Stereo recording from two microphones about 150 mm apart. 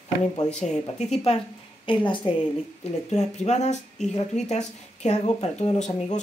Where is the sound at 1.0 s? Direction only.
45° left (ahead or behind).